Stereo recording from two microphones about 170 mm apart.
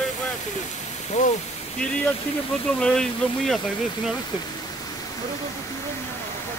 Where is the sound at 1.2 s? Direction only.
45° left (ahead or behind).